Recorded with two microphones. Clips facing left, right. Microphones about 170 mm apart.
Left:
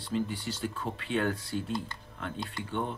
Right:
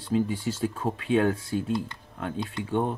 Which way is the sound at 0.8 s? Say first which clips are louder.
Right 8 dB; 45° right (ahead or behind).